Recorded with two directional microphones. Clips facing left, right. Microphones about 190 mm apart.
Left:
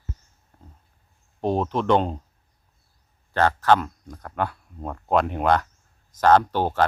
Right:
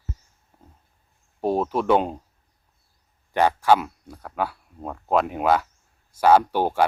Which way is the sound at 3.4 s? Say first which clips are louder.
Right 1 dB; 10° right (ahead or behind).